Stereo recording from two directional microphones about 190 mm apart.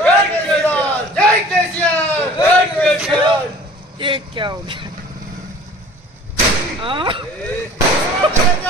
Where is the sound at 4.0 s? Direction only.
25° right (ahead or behind).